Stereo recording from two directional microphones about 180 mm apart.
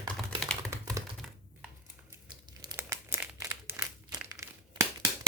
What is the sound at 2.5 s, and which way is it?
Crumpling, 20° right (ahead or behind).